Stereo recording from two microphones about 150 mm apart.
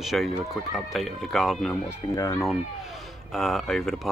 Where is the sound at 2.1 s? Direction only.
20° left (ahead or behind).